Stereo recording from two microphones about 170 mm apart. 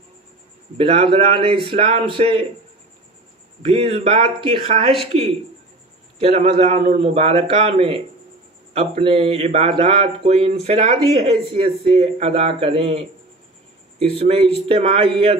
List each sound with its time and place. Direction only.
0.7 s speech: 35° right (ahead or behind)
3.6 s speech: 35° right (ahead or behind)
14.1 s speech: 35° right (ahead or behind)